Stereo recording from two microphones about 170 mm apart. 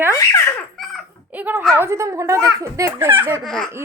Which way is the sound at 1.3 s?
10° right (ahead or behind).